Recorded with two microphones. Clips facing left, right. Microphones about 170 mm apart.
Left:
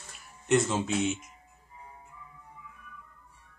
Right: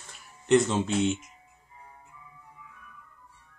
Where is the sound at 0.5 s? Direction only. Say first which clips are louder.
Right 3 dB; centre (ahead or behind).